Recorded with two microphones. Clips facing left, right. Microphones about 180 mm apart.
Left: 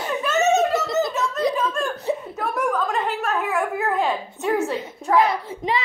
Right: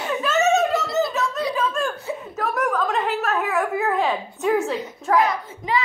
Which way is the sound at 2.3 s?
Centre (ahead or behind).